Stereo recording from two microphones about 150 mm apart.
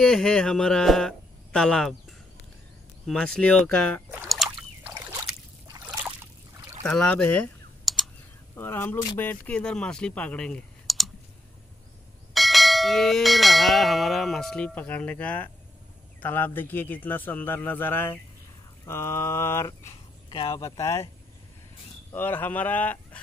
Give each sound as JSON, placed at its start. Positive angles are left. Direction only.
{"t": 0.0, "sound": "bell", "side_deg": 5}
{"t": 4.2, "sound": "a sound", "side_deg": 0}
{"t": 6.9, "sound": "typing", "side_deg": 5}
{"t": 8.5, "sound": "a man's voice", "side_deg": 15}
{"t": 12.4, "sound": "bell", "side_deg": 0}
{"t": 16.2, "sound": "a man's voice", "side_deg": 10}
{"t": 20.2, "sound": "speech", "side_deg": 35}
{"t": 20.6, "sound": "speech", "side_deg": 20}
{"t": 22.1, "sound": "a man's voice", "side_deg": 15}